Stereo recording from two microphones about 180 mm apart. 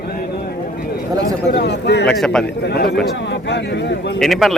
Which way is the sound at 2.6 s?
65° left (ahead or behind).